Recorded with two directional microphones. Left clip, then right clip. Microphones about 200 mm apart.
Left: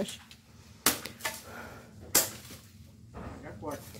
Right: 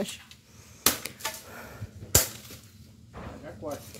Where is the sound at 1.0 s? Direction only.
Centre (ahead or behind).